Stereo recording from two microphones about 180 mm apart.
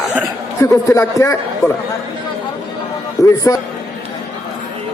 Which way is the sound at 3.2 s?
20° left (ahead or behind).